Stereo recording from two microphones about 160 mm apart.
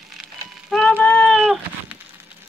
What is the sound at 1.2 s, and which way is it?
Cat, centre (ahead or behind).